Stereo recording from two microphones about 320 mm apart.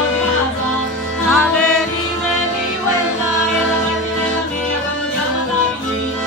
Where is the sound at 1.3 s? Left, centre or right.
Centre.